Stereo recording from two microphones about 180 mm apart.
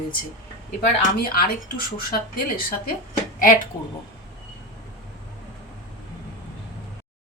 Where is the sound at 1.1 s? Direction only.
55° left (ahead or behind).